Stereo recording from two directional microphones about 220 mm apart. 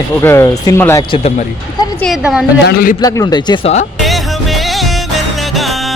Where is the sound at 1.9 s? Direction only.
Centre (ahead or behind).